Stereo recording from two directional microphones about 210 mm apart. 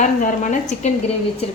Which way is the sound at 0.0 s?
35° left (ahead or behind).